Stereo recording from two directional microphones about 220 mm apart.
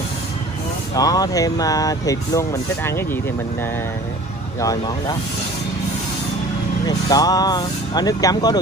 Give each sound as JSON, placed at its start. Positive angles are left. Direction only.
{"t": 0.9, "sound": "speech", "side_deg": 15}
{"t": 4.6, "sound": "speech", "side_deg": 15}
{"t": 6.9, "sound": "speech", "side_deg": 15}